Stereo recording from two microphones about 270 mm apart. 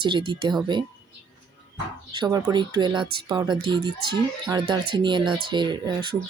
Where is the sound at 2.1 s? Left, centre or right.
Centre.